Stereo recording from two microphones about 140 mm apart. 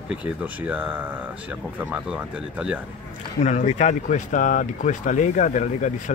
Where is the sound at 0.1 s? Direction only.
10° right (ahead or behind).